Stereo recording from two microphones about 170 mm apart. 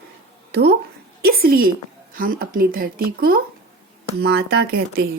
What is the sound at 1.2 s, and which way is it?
Speech, 60° right (ahead or behind).